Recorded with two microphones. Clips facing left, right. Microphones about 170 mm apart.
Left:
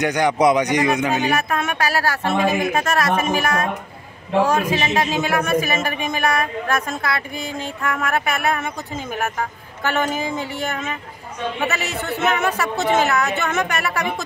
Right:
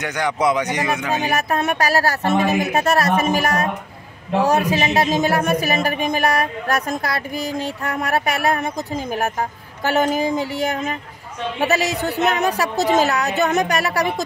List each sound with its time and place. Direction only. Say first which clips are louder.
0.0 s speech: left 4 dB; 15° left (ahead or behind)
1.2 s speech: right 1 dB; 40° right (ahead or behind)